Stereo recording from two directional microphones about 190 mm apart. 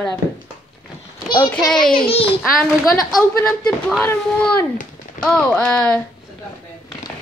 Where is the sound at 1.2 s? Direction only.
25° left (ahead or behind).